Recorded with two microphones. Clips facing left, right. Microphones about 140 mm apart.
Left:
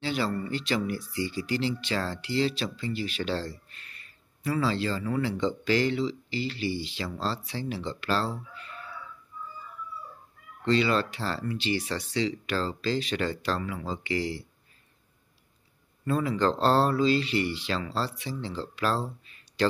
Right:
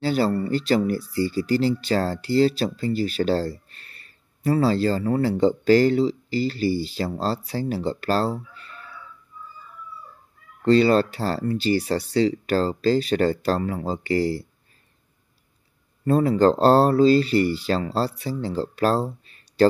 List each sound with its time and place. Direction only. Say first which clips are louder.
0.0 s speech: right 8 dB; 40° right (ahead or behind)
10.6 s speech: right 8 dB; 40° right (ahead or behind)
16.1 s speech: right 8 dB; 40° right (ahead or behind)